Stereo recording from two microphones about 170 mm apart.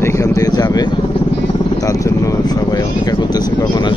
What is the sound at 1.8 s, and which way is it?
Speech, 20° left (ahead or behind).